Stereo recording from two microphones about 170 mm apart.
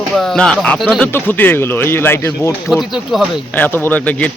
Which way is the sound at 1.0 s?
10° left (ahead or behind).